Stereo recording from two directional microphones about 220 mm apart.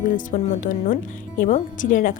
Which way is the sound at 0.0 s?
35° left (ahead or behind).